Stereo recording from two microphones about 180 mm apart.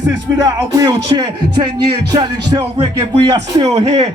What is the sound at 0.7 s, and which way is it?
Speech, 20° right (ahead or behind).